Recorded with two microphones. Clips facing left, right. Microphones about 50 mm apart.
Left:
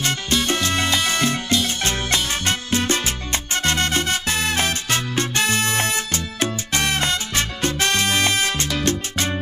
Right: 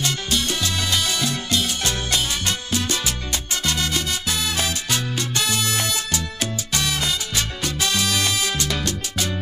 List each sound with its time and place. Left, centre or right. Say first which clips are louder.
0.0 s music: left 2 dB; left